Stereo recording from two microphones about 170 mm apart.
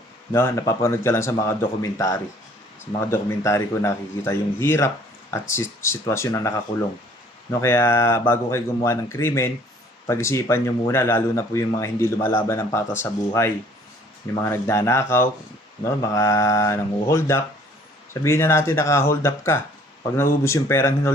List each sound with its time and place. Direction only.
0.3 s speech: 15° left (ahead or behind)
7.6 s speech: 15° left (ahead or behind)